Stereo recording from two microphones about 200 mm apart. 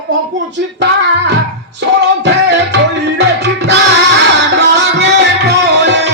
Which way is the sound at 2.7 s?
60° right (ahead or behind).